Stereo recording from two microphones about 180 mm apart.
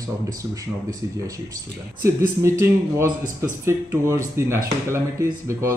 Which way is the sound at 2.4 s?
15° right (ahead or behind).